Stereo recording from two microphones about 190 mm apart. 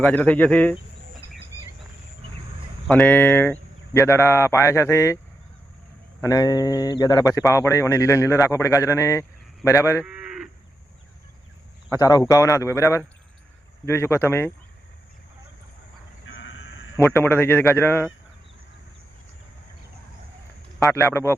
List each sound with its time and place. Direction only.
0.0 s speech: 5° left (ahead or behind)
2.8 s speech: 5° left (ahead or behind)
6.2 s speech: 20° left (ahead or behind)
10.0 s cattle: 5° right (ahead or behind)
11.9 s speech: 20° left (ahead or behind)
16.2 s a sound: 85° left
17.2 s speech: 10° left (ahead or behind)
20.7 s speech: 15° left (ahead or behind)